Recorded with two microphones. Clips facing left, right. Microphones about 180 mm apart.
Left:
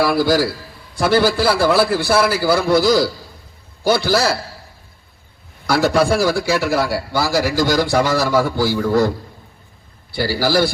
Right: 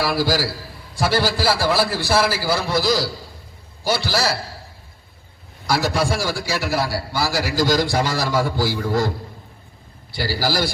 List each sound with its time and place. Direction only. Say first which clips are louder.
0.0 s a man's voice: left 5 dB; 55° left (ahead or behind)
5.6 s a man's voice: left 5 dB; 60° left (ahead or behind)
10.2 s a man's voice: left 5 dB; 60° left (ahead or behind)